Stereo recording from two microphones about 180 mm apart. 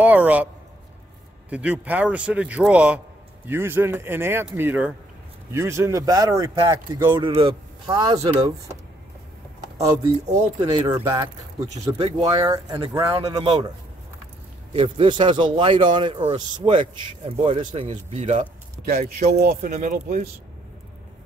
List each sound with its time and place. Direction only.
0.0 s a sound: 10° right (ahead or behind)
1.5 s speech: 10° right (ahead or behind)
7.2 s speech: 30° right (ahead or behind)
10.2 s speech: 40° right (ahead or behind)
10.6 s speech: 20° right (ahead or behind)
14.7 s speech: 30° right (ahead or behind)
19.4 s speech: 55° right (ahead or behind)